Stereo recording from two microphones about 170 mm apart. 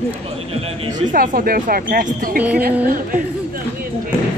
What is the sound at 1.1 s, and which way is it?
A woman's voice, 55° right (ahead or behind).